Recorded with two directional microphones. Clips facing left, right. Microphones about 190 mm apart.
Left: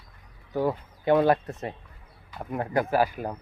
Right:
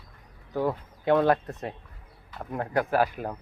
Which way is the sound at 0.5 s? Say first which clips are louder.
Left 1 dB; 5° left (ahead or behind).